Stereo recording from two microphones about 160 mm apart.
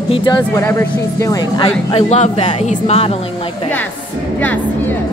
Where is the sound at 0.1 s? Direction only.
30° left (ahead or behind).